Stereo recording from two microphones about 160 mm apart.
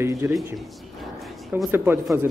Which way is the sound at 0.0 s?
20° right (ahead or behind).